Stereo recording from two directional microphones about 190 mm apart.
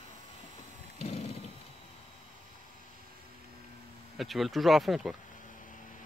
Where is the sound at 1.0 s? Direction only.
35° left (ahead or behind).